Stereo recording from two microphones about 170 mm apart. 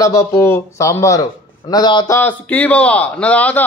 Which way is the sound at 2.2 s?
10° left (ahead or behind).